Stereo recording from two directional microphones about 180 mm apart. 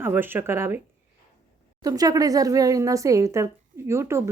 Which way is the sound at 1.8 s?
20° right (ahead or behind).